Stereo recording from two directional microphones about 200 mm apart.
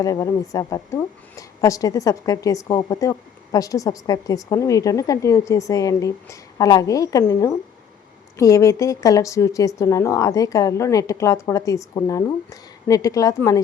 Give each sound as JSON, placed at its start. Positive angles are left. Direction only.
{"t": 0.0, "sound": "a woman's voice", "side_deg": 15}